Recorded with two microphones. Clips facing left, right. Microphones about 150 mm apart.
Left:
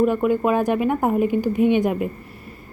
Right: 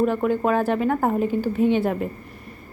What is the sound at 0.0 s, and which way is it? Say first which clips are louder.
A woman's voice: left 2 dB; 10° left (ahead or behind).